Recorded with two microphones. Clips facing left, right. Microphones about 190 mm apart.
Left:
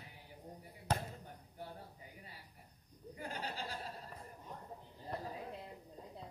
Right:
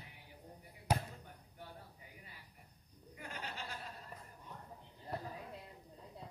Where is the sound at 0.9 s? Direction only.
10° right (ahead or behind).